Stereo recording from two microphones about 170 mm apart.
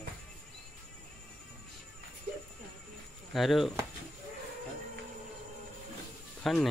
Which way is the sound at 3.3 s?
Centre (ahead or behind).